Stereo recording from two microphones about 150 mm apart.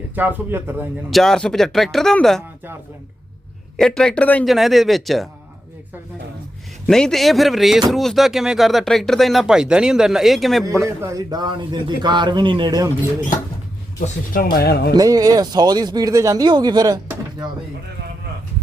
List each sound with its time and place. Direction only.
0.2 s speech: 10° right (ahead or behind)
1.1 s speech: 5° left (ahead or behind)
3.8 s speech: 5° left (ahead or behind)
6.8 s speech: 5° left (ahead or behind)
10.8 s speech: 20° right (ahead or behind)
14.5 s speech: 90° left
14.9 s speech: 25° right (ahead or behind)